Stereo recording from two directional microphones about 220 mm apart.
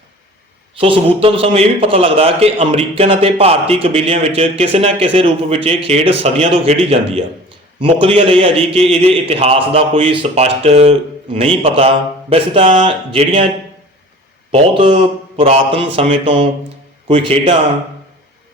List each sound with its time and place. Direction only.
0.8 s a man's voice: 25° right (ahead or behind)
14.5 s a man's voice: 25° right (ahead or behind)